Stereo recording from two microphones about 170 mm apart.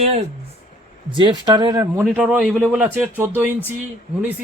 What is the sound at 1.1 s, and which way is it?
Speech, 25° right (ahead or behind).